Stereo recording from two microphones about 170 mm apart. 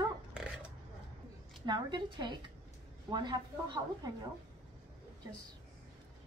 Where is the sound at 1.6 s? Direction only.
25° right (ahead or behind).